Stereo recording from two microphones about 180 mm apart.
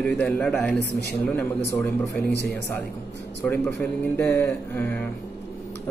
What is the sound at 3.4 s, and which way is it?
Speech, 5° left (ahead or behind).